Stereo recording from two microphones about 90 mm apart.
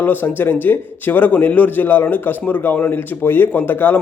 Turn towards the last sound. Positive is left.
turn(degrees=20)  # may be behind; listen again after turning